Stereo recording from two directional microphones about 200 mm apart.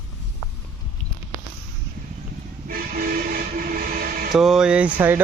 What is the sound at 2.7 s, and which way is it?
Speech, 45° right (ahead or behind).